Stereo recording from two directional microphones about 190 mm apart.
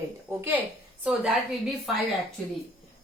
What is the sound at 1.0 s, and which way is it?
Speech, 5° right (ahead or behind).